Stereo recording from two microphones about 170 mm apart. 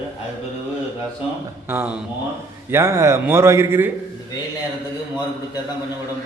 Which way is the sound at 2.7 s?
15° right (ahead or behind).